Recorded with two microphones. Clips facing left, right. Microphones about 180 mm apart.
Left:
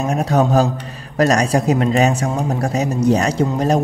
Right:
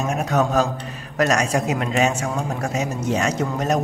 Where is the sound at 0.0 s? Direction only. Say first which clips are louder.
Left 4 dB; 35° left (ahead or behind).